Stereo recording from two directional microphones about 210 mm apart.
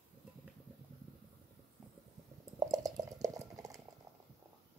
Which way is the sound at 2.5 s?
15° right (ahead or behind).